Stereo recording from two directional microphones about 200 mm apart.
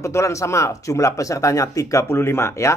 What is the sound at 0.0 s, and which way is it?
Speech, 15° left (ahead or behind).